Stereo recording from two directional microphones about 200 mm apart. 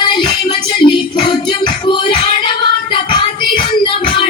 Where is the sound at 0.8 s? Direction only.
25° left (ahead or behind).